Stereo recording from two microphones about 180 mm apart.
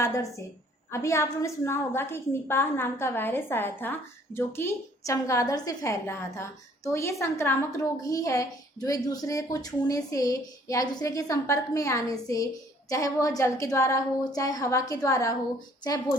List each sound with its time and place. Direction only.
0.0 s a woman's voice: 15° left (ahead or behind)